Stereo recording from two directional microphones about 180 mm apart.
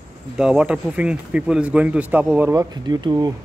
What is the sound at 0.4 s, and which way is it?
Speech, 5° right (ahead or behind).